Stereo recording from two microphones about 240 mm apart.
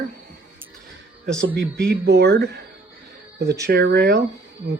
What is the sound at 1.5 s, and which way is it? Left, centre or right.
Speech, right.